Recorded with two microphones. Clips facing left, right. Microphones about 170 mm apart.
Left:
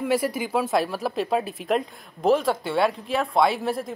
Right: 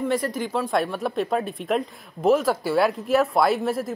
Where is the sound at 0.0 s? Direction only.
10° left (ahead or behind).